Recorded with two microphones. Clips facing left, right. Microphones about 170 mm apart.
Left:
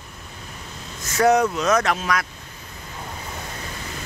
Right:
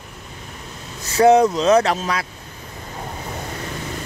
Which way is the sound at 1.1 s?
30° right (ahead or behind).